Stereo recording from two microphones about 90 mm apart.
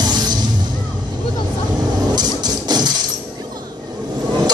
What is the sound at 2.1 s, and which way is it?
Printer, 50° right (ahead or behind).